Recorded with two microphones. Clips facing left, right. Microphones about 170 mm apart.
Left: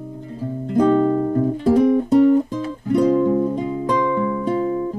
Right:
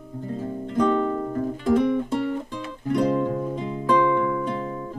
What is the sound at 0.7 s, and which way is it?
Music, 35° left (ahead or behind).